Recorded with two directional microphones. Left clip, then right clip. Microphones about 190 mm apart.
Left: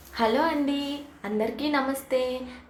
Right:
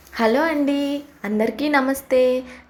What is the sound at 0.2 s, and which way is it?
A woman's voice, 25° right (ahead or behind).